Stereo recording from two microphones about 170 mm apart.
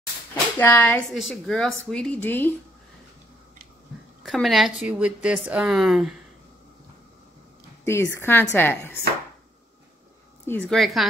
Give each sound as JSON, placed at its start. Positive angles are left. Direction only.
{"t": 0.3, "sound": "speech", "side_deg": 10}
{"t": 4.2, "sound": "a woman's voice", "side_deg": 0}
{"t": 7.8, "sound": "speech", "side_deg": 15}
{"t": 10.4, "sound": "a woman's voice", "side_deg": 10}